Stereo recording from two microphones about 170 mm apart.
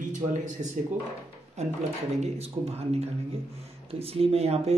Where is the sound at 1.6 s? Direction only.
40° right (ahead or behind).